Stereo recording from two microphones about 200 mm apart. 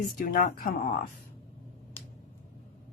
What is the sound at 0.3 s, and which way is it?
Speech, 45° left (ahead or behind).